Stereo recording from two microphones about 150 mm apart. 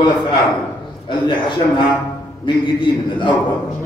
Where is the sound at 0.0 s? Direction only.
30° left (ahead or behind).